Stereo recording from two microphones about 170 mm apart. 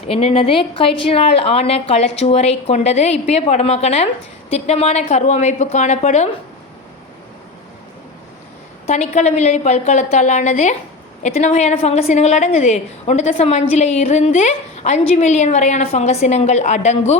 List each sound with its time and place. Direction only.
0.1 s a woman's voice: 35° left (ahead or behind)
8.9 s a woman's voice: 40° left (ahead or behind)